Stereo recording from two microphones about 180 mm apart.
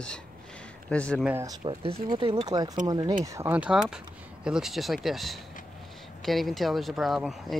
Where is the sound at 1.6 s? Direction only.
30° right (ahead or behind).